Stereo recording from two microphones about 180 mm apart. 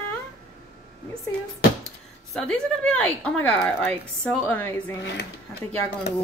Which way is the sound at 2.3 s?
5° left (ahead or behind).